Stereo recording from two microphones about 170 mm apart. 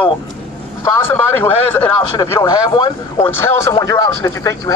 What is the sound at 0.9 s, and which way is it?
Speech, 15° left (ahead or behind).